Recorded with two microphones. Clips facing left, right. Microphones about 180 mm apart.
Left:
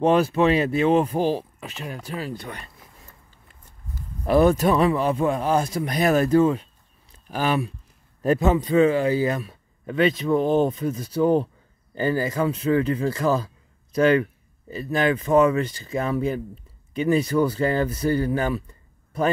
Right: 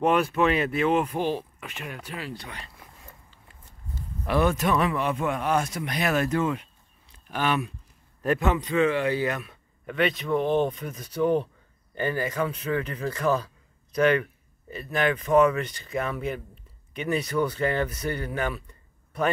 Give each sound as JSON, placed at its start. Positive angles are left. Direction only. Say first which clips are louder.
{"t": 0.0, "sound": "speech", "louder": "left 4 dB", "side_deg": 30}
{"t": 4.3, "sound": "speech", "louder": "left 6 dB", "side_deg": 35}